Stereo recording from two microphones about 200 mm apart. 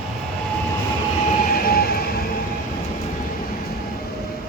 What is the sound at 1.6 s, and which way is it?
Train, 50° left (ahead or behind).